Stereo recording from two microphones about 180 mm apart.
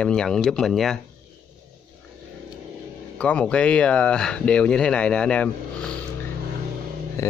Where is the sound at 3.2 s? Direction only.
5° left (ahead or behind).